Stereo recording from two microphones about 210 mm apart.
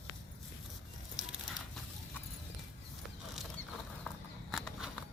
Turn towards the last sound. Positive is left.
turn(degrees=0)  # may be behind; listen again after turning